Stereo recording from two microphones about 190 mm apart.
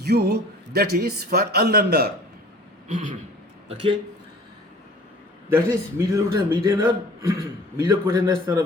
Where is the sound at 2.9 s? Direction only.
40° right (ahead or behind).